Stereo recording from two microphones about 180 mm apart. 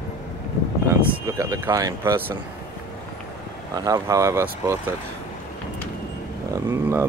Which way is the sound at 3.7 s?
20° right (ahead or behind).